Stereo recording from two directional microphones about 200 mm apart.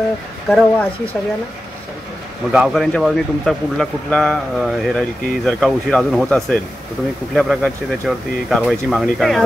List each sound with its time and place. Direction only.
0.5 s speech: 5° left (ahead or behind)
2.5 s speech: centre (ahead or behind)